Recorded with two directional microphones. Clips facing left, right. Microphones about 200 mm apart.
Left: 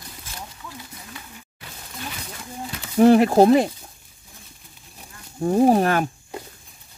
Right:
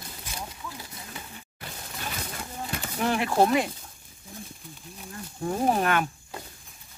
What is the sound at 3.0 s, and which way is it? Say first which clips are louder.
Speech: left 10 dB; 40° left (ahead or behind).